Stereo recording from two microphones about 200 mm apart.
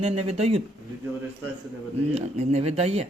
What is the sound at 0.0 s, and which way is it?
Speech, 30° right (ahead or behind).